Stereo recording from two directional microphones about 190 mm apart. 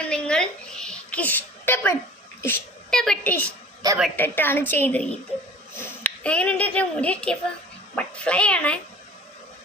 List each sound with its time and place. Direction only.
0.0 s a sound: 5° left (ahead or behind)
2.4 s a woman's voice: 5° left (ahead or behind)
3.8 s a woman's voice: 20° right (ahead or behind)
4.2 s a woman's voice: 10° left (ahead or behind)